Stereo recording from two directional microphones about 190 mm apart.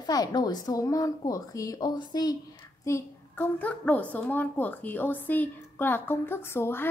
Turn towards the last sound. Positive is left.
turn(degrees=10)  # may be behind; listen again after turning